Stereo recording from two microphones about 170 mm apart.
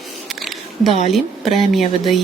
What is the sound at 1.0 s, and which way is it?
Speech, centre (ahead or behind).